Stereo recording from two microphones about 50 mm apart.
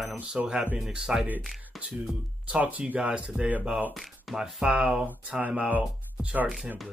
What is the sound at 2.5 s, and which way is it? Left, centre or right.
Speech, right.